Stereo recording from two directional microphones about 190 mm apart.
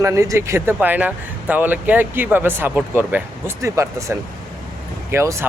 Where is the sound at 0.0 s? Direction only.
15° right (ahead or behind).